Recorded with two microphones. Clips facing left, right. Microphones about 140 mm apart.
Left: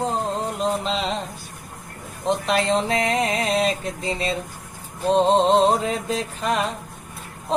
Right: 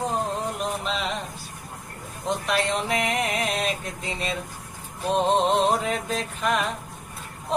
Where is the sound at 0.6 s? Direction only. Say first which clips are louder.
Left 5 dB; 30° left (ahead or behind).